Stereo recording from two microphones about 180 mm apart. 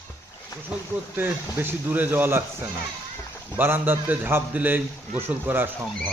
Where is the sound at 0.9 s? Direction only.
10° right (ahead or behind).